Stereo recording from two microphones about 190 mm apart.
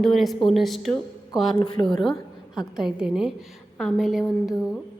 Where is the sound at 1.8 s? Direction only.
Centre (ahead or behind).